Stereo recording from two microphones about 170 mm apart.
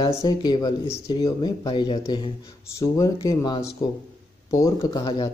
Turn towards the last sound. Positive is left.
turn(degrees=25)  # may be behind; listen again after turning